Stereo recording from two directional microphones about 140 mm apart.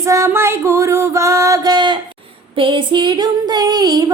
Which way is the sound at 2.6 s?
35° right (ahead or behind).